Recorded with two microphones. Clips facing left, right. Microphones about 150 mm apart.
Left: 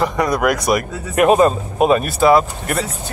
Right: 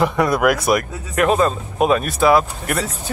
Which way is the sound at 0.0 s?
5° right (ahead or behind).